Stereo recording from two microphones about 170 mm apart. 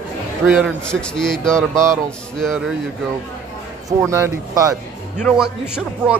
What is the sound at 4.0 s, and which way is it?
Speech, 15° right (ahead or behind).